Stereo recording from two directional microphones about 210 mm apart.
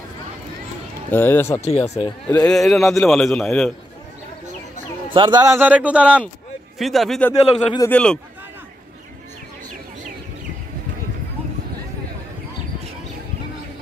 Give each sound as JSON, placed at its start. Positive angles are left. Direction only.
{"t": 1.1, "sound": "speech", "side_deg": 10}
{"t": 1.6, "sound": "speech", "side_deg": 30}
{"t": 2.2, "sound": "a man's voice", "side_deg": 5}
{"t": 5.1, "sound": "a man's voice", "side_deg": -20}